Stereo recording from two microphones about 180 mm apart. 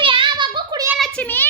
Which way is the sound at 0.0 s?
30° right (ahead or behind).